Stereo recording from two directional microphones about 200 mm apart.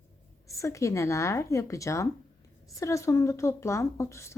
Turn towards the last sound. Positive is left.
turn(degrees=15)  # may be behind; listen again after turning